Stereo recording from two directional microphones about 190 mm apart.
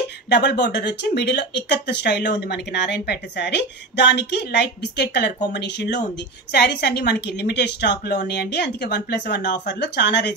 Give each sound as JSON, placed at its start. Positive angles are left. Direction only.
{"t": 0.3, "sound": "speech", "side_deg": 60}